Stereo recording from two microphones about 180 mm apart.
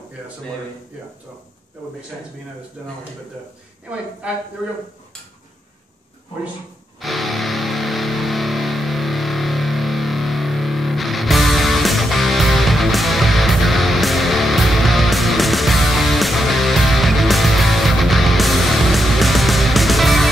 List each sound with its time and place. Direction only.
2.8 s speech: 5° right (ahead or behind)
7.0 s music: centre (ahead or behind)